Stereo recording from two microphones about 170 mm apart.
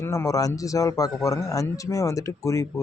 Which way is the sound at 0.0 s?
20° left (ahead or behind).